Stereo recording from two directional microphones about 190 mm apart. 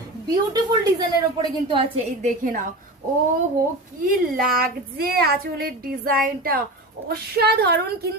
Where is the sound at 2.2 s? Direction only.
45° right (ahead or behind).